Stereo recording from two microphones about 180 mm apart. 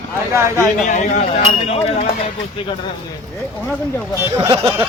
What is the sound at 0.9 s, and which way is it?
Speech, 40° left (ahead or behind).